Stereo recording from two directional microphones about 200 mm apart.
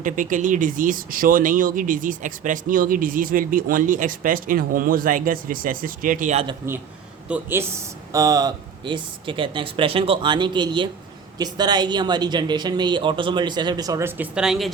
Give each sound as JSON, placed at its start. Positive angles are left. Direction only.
{"t": 0.0, "sound": "speech", "side_deg": -40}
{"t": 7.3, "sound": "speech", "side_deg": -5}
{"t": 8.1, "sound": "speech", "side_deg": -15}